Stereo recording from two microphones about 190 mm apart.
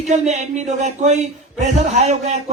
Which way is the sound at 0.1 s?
35° right (ahead or behind).